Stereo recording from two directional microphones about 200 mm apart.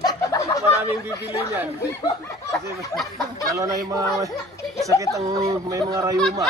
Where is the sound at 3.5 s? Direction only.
15° right (ahead or behind).